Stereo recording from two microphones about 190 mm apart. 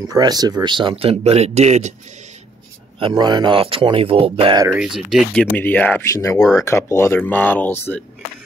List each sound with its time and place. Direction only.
0.1 s speech: 20° right (ahead or behind); by 2.0 s 35° right (ahead or behind)
3.0 s speech: 25° right (ahead or behind)
4.6 s speech: 5° right (ahead or behind)